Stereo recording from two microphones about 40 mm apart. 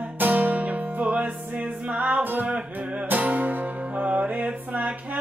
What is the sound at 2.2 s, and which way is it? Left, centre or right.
Music, right.